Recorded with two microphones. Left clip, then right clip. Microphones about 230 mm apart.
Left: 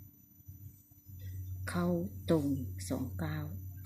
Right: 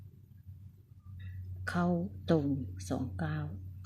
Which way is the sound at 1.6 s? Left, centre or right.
Centre.